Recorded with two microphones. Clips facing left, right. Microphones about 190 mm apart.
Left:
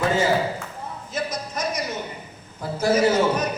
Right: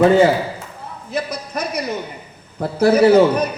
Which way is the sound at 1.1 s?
60° right (ahead or behind).